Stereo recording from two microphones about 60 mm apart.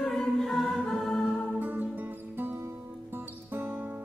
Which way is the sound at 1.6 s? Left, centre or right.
Right.